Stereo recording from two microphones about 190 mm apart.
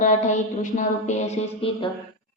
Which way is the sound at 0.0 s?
40° left (ahead or behind).